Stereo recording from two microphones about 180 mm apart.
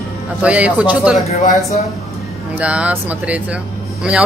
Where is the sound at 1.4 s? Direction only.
45° left (ahead or behind).